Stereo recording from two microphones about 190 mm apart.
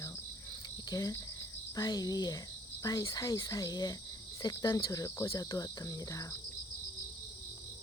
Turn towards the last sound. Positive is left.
turn(degrees=15)  # may be behind; listen again after turning